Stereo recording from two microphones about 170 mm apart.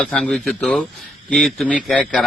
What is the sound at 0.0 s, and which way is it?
Speech, 5° left (ahead or behind).